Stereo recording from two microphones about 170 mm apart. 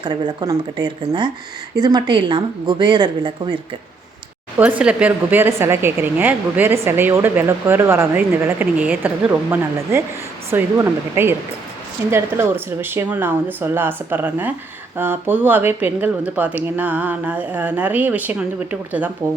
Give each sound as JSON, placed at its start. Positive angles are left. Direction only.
{"t": 0.0, "sound": "a woman's voice", "side_deg": -25}
{"t": 4.5, "sound": "speech", "side_deg": -10}